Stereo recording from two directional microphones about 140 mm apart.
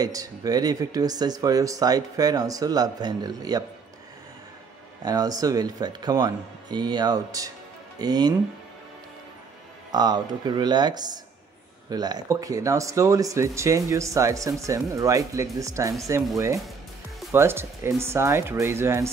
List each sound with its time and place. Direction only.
0.0 s speech: 25° right (ahead or behind)
5.0 s speech: 25° right (ahead or behind)
9.9 s speech: 30° right (ahead or behind)